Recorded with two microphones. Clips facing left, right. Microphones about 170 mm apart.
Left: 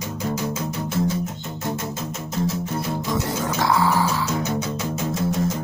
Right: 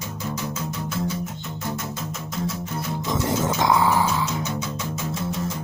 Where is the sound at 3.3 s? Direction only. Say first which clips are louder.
Right 3 dB; 20° right (ahead or behind).